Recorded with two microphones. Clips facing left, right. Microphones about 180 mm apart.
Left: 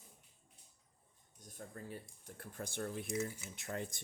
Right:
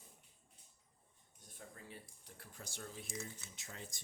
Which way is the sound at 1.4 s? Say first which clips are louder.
Left 6 dB; 45° left (ahead or behind).